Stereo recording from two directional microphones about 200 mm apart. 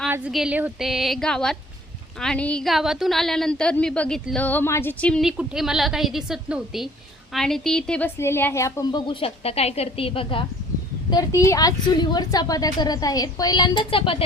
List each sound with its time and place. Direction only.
0.1 s a woman's voice: 5° right (ahead or behind); by 14.3 s 25° left (ahead or behind)